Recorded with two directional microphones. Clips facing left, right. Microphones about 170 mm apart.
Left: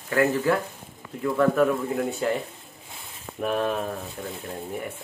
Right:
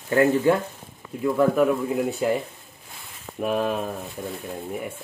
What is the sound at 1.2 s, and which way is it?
Speech, 15° right (ahead or behind).